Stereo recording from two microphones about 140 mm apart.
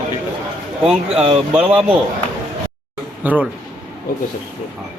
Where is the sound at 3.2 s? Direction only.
10° right (ahead or behind).